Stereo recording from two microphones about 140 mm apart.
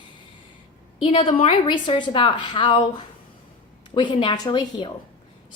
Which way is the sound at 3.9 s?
35° left (ahead or behind).